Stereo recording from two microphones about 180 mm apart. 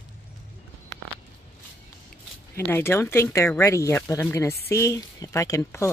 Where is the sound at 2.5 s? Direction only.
15° left (ahead or behind).